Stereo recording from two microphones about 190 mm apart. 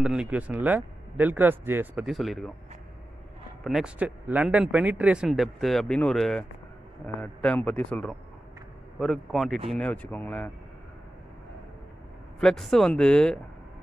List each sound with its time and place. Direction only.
0.0 s speech: 5° right (ahead or behind)
3.6 s speech: 5° right (ahead or behind)
12.4 s speech: centre (ahead or behind)